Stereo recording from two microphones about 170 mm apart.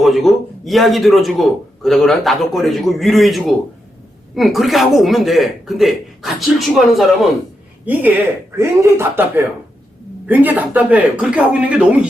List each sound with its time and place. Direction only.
0.0 s speech: centre (ahead or behind)
8.5 s speech: 15° right (ahead or behind)